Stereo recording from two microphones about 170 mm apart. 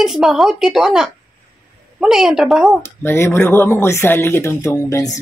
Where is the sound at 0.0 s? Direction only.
5° right (ahead or behind).